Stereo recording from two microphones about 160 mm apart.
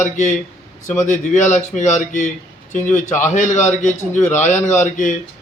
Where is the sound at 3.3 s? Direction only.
50° left (ahead or behind).